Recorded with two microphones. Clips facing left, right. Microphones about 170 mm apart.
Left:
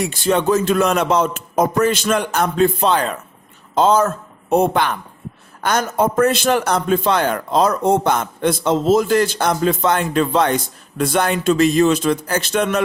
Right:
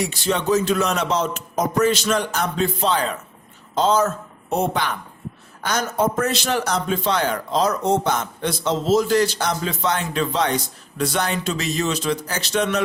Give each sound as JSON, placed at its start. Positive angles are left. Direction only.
{"t": 0.0, "sound": "a man's voice", "side_deg": 55}